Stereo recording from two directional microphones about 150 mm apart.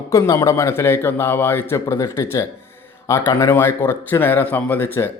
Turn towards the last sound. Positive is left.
turn(degrees=15)  # may be behind; listen again after turning